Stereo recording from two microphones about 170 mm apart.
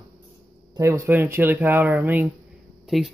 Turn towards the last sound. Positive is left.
turn(degrees=0)  # may be behind; listen again after turning